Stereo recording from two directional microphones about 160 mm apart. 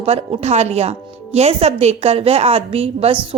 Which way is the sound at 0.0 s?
40° right (ahead or behind).